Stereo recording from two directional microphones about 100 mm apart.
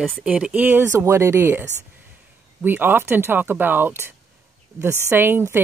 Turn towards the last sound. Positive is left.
turn(degrees=-20)  # may be behind; listen again after turning